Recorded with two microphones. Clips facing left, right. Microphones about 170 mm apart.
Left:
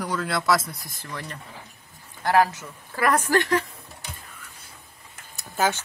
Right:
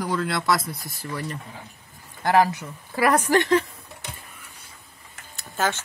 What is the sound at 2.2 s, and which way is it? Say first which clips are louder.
A woman's voice: right 1 dB; 15° right (ahead or behind).